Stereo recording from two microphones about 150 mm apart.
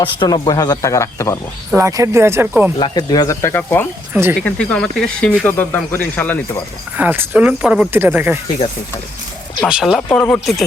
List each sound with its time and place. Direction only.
0.0 s speech: 35° left (ahead or behind)
1.7 s speech: 20° right (ahead or behind)
2.7 s speech: 30° left (ahead or behind); by 3.8 s 15° left (ahead or behind)
4.1 s speech: 15° right (ahead or behind)
4.4 s speech: 5° left (ahead or behind)
6.9 s speech: 10° right (ahead or behind)
9.6 s speech: 5° right (ahead or behind)
10.1 s speech: 10° left (ahead or behind)